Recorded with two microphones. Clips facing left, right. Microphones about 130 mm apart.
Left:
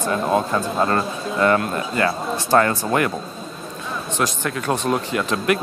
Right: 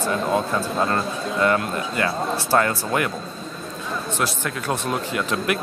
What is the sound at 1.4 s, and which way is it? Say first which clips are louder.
Speech: left 3 dB; 40° left (ahead or behind).